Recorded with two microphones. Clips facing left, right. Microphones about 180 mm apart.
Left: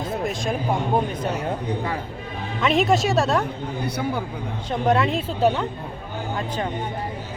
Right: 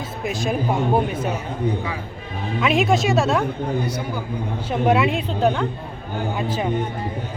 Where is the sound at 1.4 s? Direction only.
50° left (ahead or behind).